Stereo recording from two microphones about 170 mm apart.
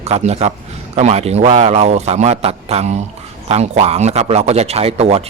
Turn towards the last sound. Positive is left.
turn(degrees=-35)  # may be behind; listen again after turning